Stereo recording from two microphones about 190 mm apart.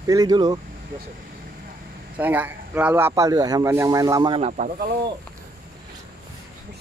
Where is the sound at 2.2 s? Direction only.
10° right (ahead or behind).